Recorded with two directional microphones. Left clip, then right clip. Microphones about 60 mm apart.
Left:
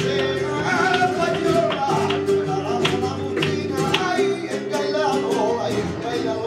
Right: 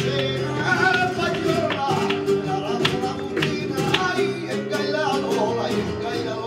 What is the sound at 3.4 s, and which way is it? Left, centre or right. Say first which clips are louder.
Music: left 1 dB; left.